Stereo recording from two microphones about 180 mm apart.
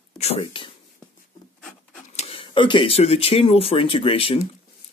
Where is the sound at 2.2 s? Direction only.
30° left (ahead or behind).